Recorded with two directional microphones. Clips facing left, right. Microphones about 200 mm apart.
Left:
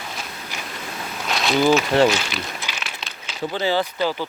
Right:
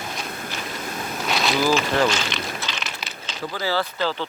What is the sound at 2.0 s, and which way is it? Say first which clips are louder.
Speech: left 3 dB; 10° left (ahead or behind).